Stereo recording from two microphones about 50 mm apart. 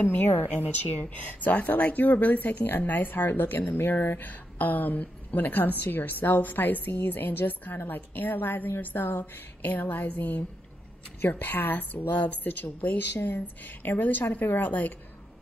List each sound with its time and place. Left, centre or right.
0.0 s speech: left